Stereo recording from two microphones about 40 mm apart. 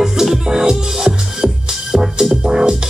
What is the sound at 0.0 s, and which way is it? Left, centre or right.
Music, centre.